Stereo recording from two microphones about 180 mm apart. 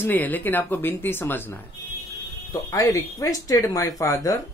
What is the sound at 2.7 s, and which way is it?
Speech, 20° left (ahead or behind).